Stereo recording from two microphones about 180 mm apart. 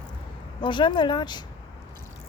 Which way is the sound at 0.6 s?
25° left (ahead or behind).